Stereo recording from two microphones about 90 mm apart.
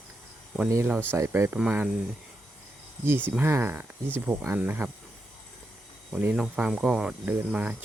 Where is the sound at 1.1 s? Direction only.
30° right (ahead or behind).